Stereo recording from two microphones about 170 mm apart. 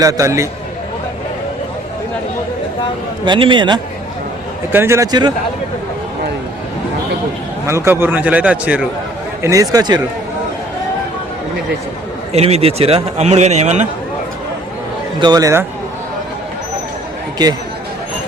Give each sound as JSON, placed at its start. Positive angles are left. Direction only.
{"t": 0.0, "sound": "a man's voice", "side_deg": -20}
{"t": 3.2, "sound": "speech", "side_deg": -30}
{"t": 4.7, "sound": "a man's voice", "side_deg": -15}
{"t": 7.7, "sound": "a man's voice", "side_deg": -15}
{"t": 9.4, "sound": "speech", "side_deg": -20}
{"t": 12.3, "sound": "a man's voice", "side_deg": -40}
{"t": 15.2, "sound": "speech", "side_deg": -20}